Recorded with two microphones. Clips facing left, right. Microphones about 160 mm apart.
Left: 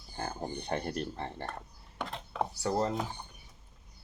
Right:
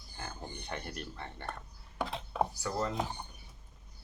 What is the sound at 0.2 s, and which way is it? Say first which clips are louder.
Speech: left 7 dB; 40° left (ahead or behind).